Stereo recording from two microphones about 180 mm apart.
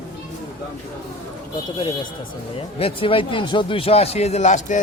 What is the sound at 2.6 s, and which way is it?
Speech, 30° left (ahead or behind).